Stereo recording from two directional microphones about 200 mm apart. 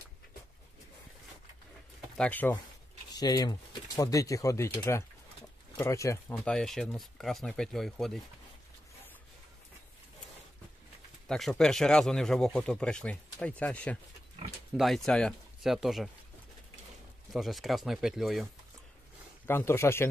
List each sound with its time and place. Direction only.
2.1 s speech: 5° left (ahead or behind)
3.2 s speech: 20° left (ahead or behind); by 8.2 s centre (ahead or behind)
11.2 s speech: centre (ahead or behind)
17.3 s speech: centre (ahead or behind)
19.4 s speech: 10° left (ahead or behind)